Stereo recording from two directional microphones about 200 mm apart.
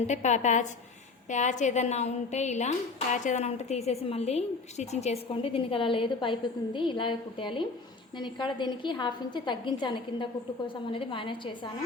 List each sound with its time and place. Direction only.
0.1 s a woman's voice: 35° left (ahead or behind)